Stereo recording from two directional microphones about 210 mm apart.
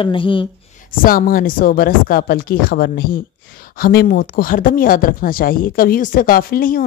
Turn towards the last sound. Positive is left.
turn(degrees=45)  # may be behind; listen again after turning